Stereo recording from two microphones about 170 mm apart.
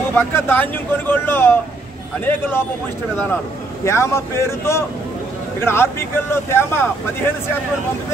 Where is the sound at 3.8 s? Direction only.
15° left (ahead or behind).